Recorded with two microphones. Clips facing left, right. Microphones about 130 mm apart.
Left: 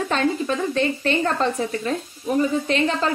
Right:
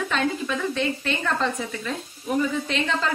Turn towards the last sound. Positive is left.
turn(degrees=40)  # may be behind; listen again after turning